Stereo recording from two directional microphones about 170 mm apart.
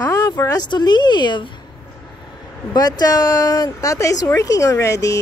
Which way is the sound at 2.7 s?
20° left (ahead or behind).